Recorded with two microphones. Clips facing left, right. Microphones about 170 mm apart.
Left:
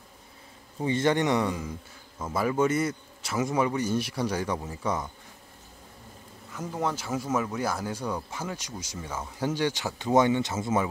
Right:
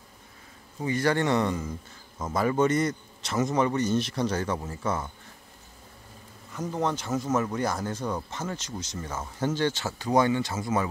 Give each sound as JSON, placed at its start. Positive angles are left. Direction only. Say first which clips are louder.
{"t": 0.8, "sound": "speech", "louder": "left 1 dB", "side_deg": 25}
{"t": 6.5, "sound": "speech", "louder": "right 2 dB", "side_deg": 5}